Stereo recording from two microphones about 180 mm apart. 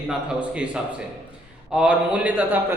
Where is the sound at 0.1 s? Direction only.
5° right (ahead or behind).